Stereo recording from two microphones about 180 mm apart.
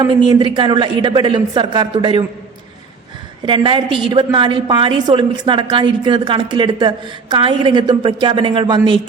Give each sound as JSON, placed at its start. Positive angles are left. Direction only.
{"t": 0.0, "sound": "a woman's voice", "side_deg": -25}
{"t": 3.4, "sound": "a woman's voice", "side_deg": -30}